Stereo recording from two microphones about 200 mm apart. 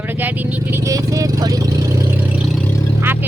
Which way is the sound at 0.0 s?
10° right (ahead or behind).